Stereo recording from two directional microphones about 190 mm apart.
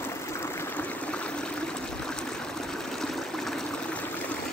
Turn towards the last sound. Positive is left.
turn(degrees=5)  # may be behind; listen again after turning